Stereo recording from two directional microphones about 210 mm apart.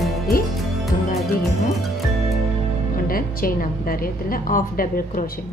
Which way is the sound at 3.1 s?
45° left (ahead or behind).